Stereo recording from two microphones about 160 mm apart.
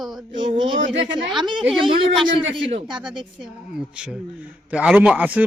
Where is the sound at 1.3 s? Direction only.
Centre (ahead or behind).